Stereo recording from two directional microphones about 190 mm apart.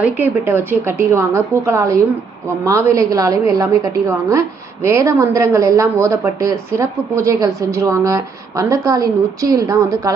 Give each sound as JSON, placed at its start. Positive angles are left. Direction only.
{"t": 0.0, "sound": "a woman's voice", "side_deg": -10}